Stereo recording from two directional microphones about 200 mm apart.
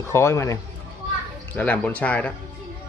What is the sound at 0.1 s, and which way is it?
Speech, 15° left (ahead or behind).